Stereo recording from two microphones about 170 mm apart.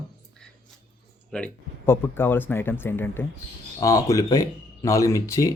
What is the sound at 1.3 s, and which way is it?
Speech, 5° left (ahead or behind).